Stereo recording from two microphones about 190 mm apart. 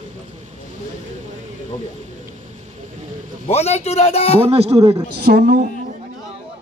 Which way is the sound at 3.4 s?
35° left (ahead or behind).